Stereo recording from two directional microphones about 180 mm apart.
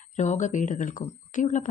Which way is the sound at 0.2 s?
40° left (ahead or behind).